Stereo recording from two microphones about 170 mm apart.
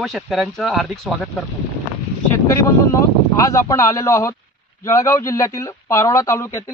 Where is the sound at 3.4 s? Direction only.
20° left (ahead or behind).